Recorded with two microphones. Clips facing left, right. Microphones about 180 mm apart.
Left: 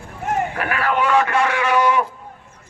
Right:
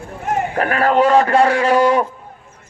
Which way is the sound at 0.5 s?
40° right (ahead or behind).